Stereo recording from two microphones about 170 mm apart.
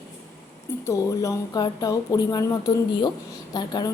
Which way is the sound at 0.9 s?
20° left (ahead or behind).